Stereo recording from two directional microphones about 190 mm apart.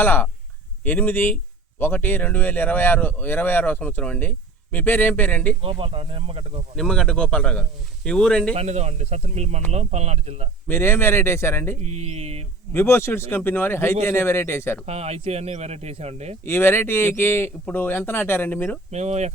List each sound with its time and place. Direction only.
0.0 s speech: 10° left (ahead or behind)
5.6 s speech: 30° right (ahead or behind)
6.7 s a man's voice: 5° left (ahead or behind)
8.5 s speech: 35° right (ahead or behind)
10.7 s speech: 10° left (ahead or behind)
11.8 s speech: 35° right (ahead or behind)
12.7 s speech: 10° left (ahead or behind)
14.8 s speech: 35° right (ahead or behind)
16.4 s speech: 10° left (ahead or behind)
18.9 s speech: 35° right (ahead or behind)